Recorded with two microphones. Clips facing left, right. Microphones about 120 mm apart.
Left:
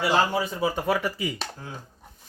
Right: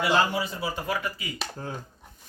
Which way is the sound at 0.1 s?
45° left (ahead or behind).